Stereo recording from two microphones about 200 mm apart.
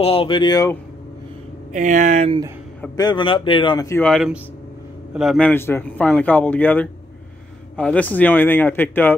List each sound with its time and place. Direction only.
0.0 s speech: 25° left (ahead or behind)
1.7 s speech: 40° right (ahead or behind)
3.0 s speech: 20° left (ahead or behind)
4.0 s a man's voice: centre (ahead or behind)